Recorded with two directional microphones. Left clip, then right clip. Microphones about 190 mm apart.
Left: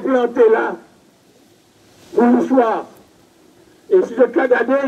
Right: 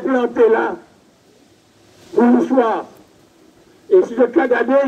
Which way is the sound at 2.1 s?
55° right (ahead or behind).